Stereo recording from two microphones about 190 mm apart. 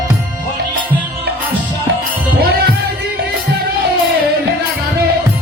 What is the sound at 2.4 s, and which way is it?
Music, 55° right (ahead or behind).